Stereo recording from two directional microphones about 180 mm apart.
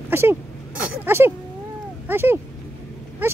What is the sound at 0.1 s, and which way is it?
Speech, 15° right (ahead or behind).